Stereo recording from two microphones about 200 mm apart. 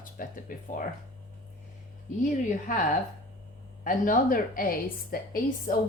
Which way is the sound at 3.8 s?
40° left (ahead or behind).